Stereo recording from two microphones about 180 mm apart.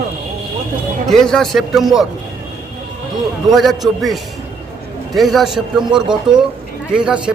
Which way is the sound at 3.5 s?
Centre (ahead or behind).